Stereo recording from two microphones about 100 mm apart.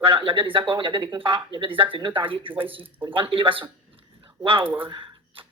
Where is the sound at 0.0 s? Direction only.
60° right (ahead or behind).